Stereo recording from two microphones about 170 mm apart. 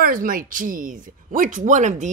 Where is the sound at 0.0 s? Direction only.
55° right (ahead or behind).